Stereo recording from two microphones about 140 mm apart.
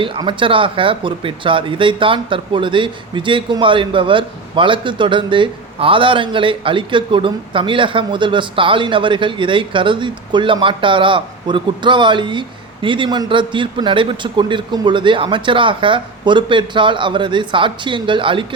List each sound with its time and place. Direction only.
0.0 s speech: 40° right (ahead or behind)